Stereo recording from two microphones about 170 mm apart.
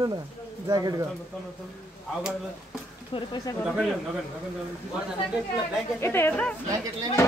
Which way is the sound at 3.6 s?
Centre (ahead or behind).